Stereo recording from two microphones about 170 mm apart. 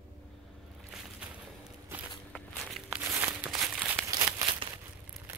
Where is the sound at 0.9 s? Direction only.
5° right (ahead or behind).